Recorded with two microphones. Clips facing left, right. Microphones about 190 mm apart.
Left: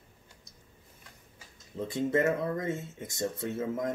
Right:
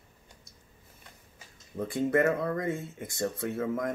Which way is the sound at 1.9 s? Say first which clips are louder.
Right 2 dB; 20° left (ahead or behind).